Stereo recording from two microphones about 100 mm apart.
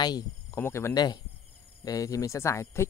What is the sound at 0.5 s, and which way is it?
Speech, 25° left (ahead or behind).